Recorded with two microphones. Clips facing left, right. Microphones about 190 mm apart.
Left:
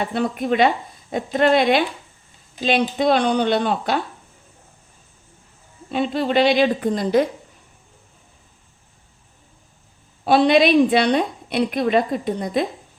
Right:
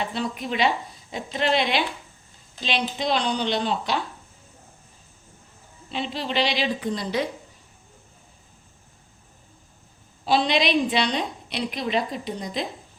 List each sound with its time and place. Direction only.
0.0 s a woman's voice: 55° left (ahead or behind)
5.9 s a woman's voice: 50° left (ahead or behind)
10.2 s a woman's voice: 55° left (ahead or behind)